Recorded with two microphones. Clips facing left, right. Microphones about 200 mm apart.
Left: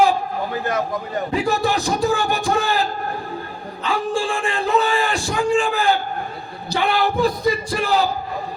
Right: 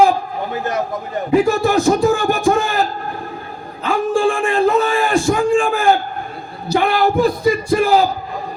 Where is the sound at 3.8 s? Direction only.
55° right (ahead or behind).